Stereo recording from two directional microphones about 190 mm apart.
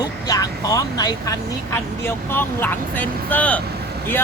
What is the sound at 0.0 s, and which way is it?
A man's voice, 20° left (ahead or behind).